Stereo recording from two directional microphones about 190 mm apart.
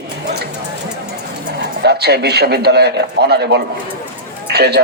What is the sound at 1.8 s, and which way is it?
A man's voice, 60° right (ahead or behind).